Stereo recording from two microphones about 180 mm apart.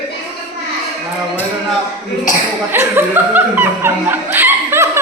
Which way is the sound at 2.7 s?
15° right (ahead or behind).